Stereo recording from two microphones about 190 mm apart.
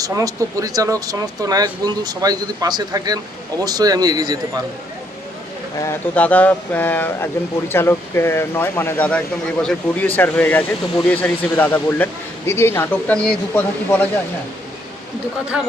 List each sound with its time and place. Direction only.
0.0 s speech: 15° right (ahead or behind)
5.8 s speech: 10° left (ahead or behind)
15.5 s speech: 5° right (ahead or behind)